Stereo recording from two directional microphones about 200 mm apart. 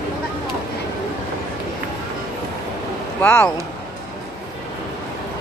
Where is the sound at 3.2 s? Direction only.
10° left (ahead or behind).